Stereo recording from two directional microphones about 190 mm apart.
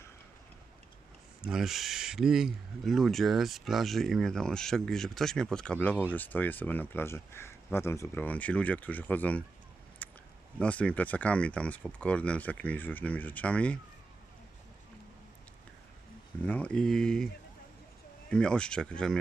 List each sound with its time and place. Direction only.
1.5 s speech: centre (ahead or behind)
5.9 s speech: 10° right (ahead or behind)
6.1 s speech: 10° left (ahead or behind)
10.0 s a sound: 10° left (ahead or behind)
10.6 s speech: 5° left (ahead or behind)
16.4 s speech: 10° left (ahead or behind)
18.3 s speech: 5° left (ahead or behind)